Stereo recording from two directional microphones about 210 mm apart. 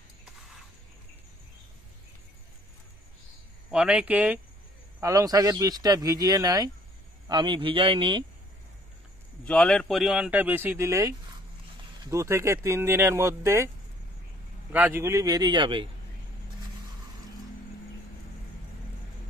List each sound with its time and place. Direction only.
3.7 s speech: 5° right (ahead or behind); by 8.3 s 20° right (ahead or behind)
9.4 s speech: 5° left (ahead or behind); by 13.7 s 15° right (ahead or behind)
14.7 s speech: 10° right (ahead or behind)